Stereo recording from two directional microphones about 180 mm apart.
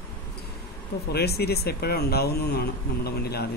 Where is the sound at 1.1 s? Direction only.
60° left (ahead or behind).